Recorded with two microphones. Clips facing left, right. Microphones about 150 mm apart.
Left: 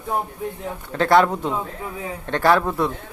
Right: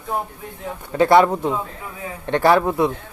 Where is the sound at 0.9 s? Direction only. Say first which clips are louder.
Right 3 dB; 5° right (ahead or behind).